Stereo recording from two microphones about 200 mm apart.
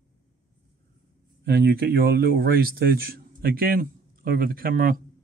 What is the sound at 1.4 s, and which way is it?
Speech, 50° right (ahead or behind).